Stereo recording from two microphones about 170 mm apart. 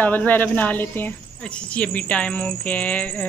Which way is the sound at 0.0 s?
10° left (ahead or behind).